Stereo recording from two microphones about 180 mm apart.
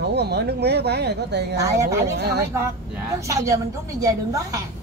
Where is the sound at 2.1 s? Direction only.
65° right (ahead or behind).